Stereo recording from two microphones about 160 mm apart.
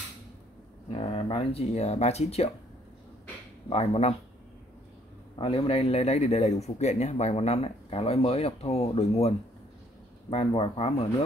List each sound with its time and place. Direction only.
0.8 s speech: 35° left (ahead or behind)
3.6 s speech: 40° left (ahead or behind)
5.3 s speech: 35° left (ahead or behind)
10.3 s speech: 35° left (ahead or behind)